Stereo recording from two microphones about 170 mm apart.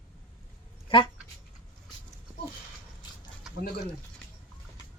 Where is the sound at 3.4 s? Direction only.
Centre (ahead or behind).